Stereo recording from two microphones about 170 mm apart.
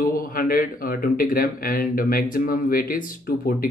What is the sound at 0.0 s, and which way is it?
Speech, 55° left (ahead or behind).